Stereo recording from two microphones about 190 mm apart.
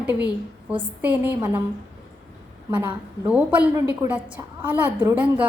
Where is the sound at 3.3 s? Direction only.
10° right (ahead or behind).